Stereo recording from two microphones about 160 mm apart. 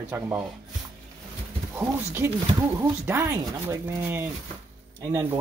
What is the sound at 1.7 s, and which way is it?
Speech, 15° right (ahead or behind).